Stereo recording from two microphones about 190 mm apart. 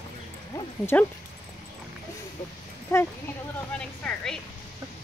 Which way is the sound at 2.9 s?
10° left (ahead or behind).